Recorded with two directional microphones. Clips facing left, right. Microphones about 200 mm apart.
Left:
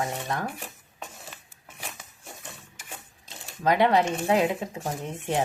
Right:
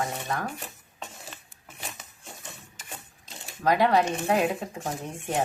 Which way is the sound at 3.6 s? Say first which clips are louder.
Left 1 dB; 25° left (ahead or behind).